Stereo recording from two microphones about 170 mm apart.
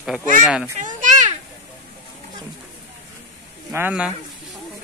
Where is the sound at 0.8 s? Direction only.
50° right (ahead or behind).